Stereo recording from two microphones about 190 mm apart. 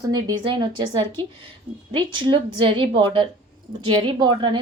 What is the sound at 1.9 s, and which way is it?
A woman's voice, 25° right (ahead or behind).